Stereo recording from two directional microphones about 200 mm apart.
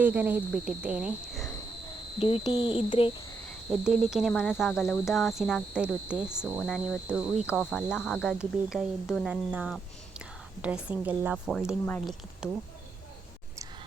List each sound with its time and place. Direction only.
0.0 s speech: 10° right (ahead or behind)
2.1 s speech: 30° left (ahead or behind)
3.7 s speech: centre (ahead or behind)